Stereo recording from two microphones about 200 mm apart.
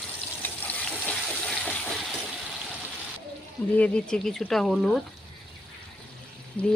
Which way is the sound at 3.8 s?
5° left (ahead or behind).